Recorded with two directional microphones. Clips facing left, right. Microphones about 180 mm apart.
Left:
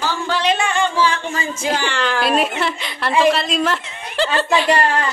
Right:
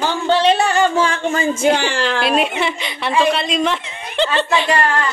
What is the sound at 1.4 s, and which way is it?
Speech, 30° right (ahead or behind).